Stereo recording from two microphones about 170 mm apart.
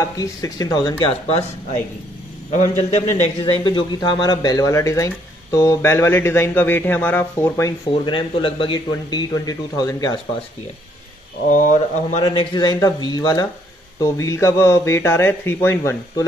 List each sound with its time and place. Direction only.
0.2 s a man's voice: 20° left (ahead or behind)
1.2 s speech: 40° left (ahead or behind)
3.6 s speech: 25° left (ahead or behind)
8.0 s a man's voice: 30° left (ahead or behind)
11.4 s speech: 50° left (ahead or behind)
12.3 s a man's voice: 25° left (ahead or behind)